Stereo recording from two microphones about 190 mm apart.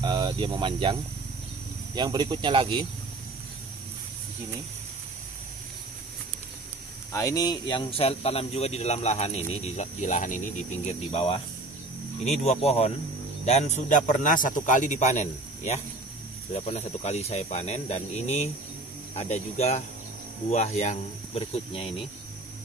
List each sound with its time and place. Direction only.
0.0 s speech: 25° right (ahead or behind)
2.0 s cricket: 20° right (ahead or behind)
7.1 s speech: 15° left (ahead or behind)
12.4 s speech: 35° left (ahead or behind)